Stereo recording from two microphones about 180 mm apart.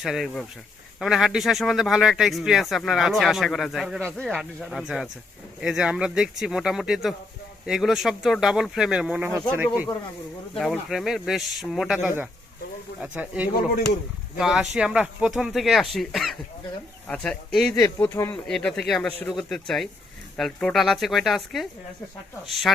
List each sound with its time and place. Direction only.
0.0 s speech: centre (ahead or behind)
10.5 s speech: centre (ahead or behind)
17.7 s speech: 15° left (ahead or behind)
18.4 s speech: 5° left (ahead or behind)